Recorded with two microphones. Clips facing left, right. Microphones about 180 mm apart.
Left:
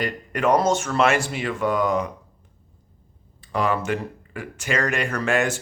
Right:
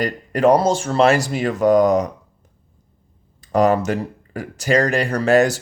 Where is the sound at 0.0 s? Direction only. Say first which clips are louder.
Right 7 dB; 35° right (ahead or behind).